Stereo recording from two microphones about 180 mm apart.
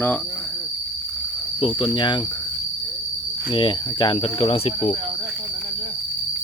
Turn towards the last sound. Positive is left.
turn(degrees=30)  # may be behind; listen again after turning